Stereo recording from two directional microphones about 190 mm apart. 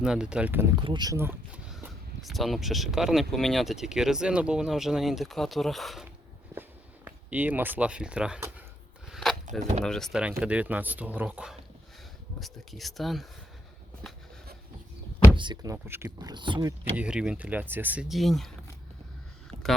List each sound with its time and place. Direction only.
0.0 s speech: 5° right (ahead or behind)
0.9 s speech: 20° right (ahead or behind); by 6.1 s centre (ahead or behind)
6.5 s a sound: 10° right (ahead or behind)
9.8 s speech: centre (ahead or behind)
15.4 s speech: 20° right (ahead or behind)
17.0 s speech: 5° right (ahead or behind)